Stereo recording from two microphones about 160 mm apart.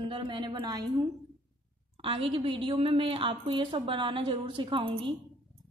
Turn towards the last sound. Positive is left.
turn(degrees=-35)  # may be behind; listen again after turning